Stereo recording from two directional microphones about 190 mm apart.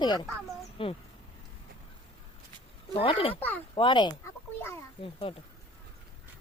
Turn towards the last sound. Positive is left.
turn(degrees=30)  # may be behind; listen again after turning